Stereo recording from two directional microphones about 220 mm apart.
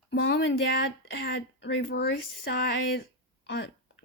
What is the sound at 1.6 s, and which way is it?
Speech, 55° left (ahead or behind).